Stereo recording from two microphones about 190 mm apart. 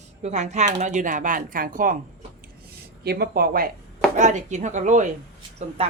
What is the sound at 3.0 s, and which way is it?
Speech, 55° right (ahead or behind).